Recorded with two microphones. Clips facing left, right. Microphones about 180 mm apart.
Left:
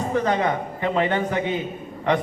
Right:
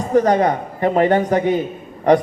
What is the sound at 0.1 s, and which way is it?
A man's voice, 45° right (ahead or behind).